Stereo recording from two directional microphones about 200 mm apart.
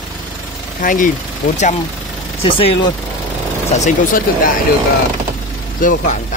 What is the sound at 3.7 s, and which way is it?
Speech, 45° left (ahead or behind).